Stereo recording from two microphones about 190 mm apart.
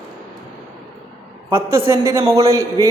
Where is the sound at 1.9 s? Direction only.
15° right (ahead or behind).